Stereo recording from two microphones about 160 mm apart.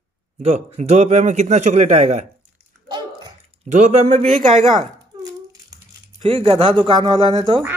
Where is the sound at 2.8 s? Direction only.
25° right (ahead or behind).